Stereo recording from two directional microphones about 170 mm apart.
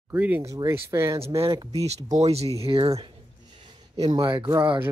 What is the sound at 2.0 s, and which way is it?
Speech, 40° right (ahead or behind).